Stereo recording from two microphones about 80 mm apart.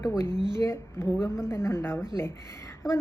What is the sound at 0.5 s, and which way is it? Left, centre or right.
A woman's voice, left.